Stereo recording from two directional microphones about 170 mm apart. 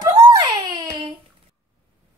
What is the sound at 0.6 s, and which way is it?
Baby cry, 25° right (ahead or behind).